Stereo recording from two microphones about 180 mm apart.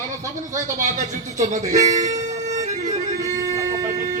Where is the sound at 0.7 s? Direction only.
45° right (ahead or behind).